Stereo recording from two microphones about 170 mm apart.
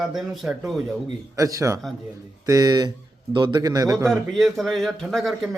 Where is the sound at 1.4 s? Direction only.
20° right (ahead or behind).